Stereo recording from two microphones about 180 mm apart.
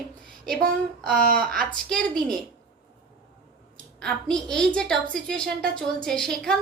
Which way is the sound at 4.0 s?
5° left (ahead or behind).